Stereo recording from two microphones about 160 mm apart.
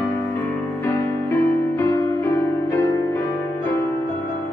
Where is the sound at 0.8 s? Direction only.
20° left (ahead or behind).